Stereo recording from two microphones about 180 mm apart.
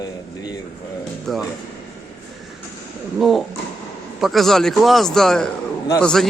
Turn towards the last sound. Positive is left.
turn(degrees=5)  # may be behind; listen again after turning